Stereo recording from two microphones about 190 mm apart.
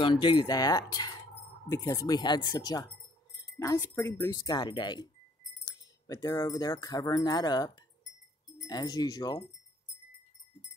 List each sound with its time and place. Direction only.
0.0 s wind chime: 25° left (ahead or behind)
6.0 s wind chime: 20° left (ahead or behind)